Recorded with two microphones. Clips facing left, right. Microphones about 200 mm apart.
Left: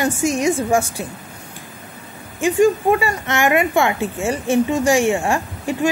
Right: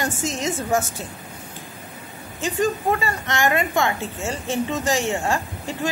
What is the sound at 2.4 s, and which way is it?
A woman's voice, 15° left (ahead or behind).